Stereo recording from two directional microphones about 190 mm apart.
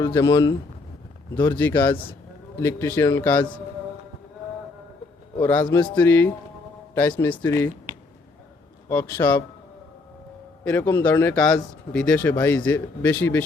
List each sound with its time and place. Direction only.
0.0 s speech: 15° left (ahead or behind)
5.4 s speech: 10° left (ahead or behind)
8.9 s speech: 10° left (ahead or behind)
10.6 s speech: 10° left (ahead or behind)